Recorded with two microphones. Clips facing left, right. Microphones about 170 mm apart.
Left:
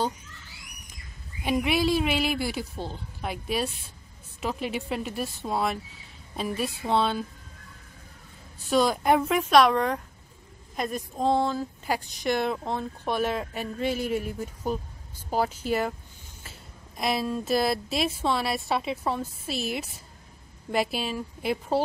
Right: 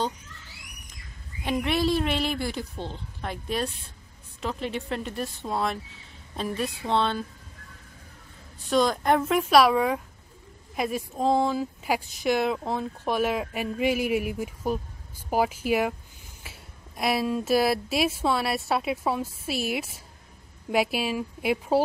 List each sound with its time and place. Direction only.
1.4 s speech: 10° left (ahead or behind)
8.6 s a woman's voice: 5° left (ahead or behind)